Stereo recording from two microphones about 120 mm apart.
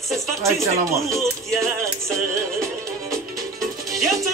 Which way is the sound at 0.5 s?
25° right (ahead or behind).